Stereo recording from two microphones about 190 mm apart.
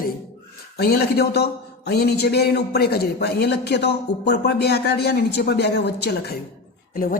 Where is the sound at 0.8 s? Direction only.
55° left (ahead or behind).